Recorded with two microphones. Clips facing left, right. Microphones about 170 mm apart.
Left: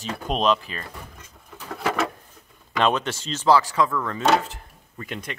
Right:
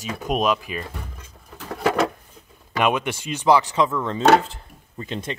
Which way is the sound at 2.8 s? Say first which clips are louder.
Right 1 dB; 10° right (ahead or behind).